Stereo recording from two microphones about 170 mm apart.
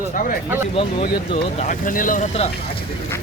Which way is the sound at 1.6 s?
50° left (ahead or behind).